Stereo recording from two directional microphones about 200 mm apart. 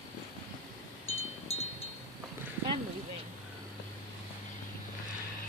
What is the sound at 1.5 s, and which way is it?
Wind chime, 30° left (ahead or behind).